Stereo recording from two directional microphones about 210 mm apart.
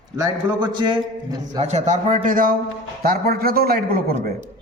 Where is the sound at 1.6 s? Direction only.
35° right (ahead or behind).